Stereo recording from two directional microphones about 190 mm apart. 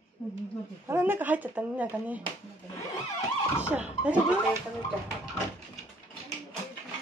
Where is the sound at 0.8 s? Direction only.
10° right (ahead or behind).